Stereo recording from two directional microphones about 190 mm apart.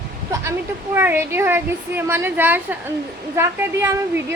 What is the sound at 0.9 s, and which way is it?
A woman's voice, 10° right (ahead or behind).